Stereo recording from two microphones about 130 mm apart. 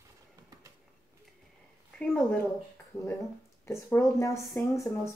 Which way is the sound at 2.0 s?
10° left (ahead or behind).